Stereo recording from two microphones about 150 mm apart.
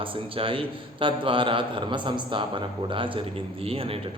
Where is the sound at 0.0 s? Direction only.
35° right (ahead or behind).